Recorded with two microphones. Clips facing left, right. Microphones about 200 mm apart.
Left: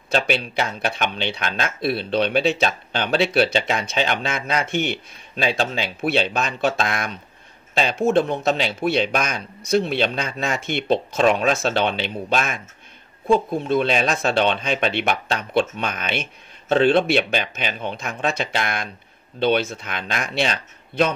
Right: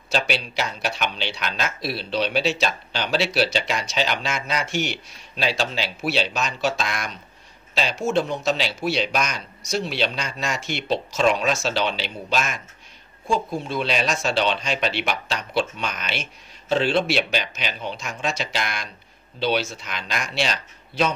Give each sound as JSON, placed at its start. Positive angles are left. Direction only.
{"t": 0.1, "sound": "speech", "side_deg": 55}